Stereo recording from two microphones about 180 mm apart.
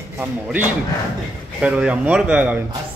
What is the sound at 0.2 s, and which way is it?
Speech, 10° right (ahead or behind).